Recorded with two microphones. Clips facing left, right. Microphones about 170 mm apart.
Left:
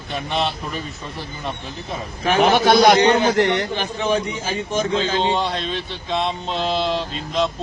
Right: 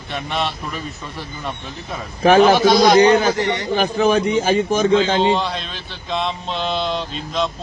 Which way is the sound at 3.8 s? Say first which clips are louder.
Right 5 dB; 65° right (ahead or behind).